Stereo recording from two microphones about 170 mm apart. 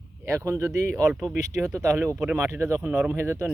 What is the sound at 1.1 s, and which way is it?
Speech, centre (ahead or behind).